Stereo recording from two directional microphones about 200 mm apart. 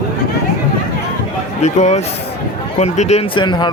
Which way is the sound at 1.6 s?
35° left (ahead or behind).